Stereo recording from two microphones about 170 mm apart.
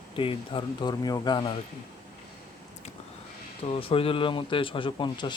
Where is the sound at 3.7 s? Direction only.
35° left (ahead or behind).